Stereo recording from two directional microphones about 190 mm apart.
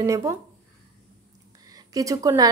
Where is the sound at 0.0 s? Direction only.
15° right (ahead or behind).